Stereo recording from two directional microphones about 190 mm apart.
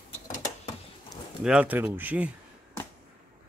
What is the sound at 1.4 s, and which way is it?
Speech, 5° right (ahead or behind).